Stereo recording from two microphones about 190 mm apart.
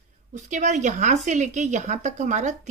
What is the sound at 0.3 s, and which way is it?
Speech, 40° right (ahead or behind).